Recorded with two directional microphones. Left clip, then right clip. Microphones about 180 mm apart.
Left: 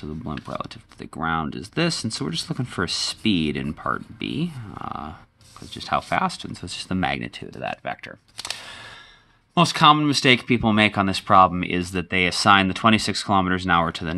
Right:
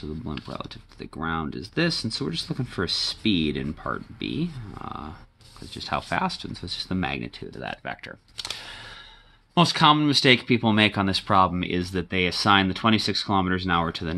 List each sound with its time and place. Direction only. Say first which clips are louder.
0.5 s speech: left 5 dB; 30° left (ahead or behind)
5.7 s speech: left 4 dB; 15° left (ahead or behind)